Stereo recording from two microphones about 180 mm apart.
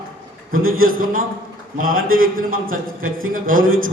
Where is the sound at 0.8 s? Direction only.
50° right (ahead or behind).